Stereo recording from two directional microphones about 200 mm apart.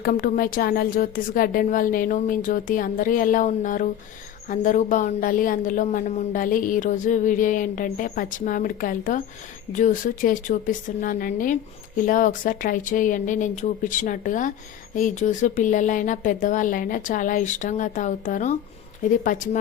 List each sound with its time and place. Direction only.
0.0 s a woman's voice: 45° left (ahead or behind)